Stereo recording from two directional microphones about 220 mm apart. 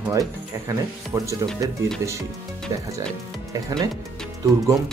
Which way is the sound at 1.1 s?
10° right (ahead or behind).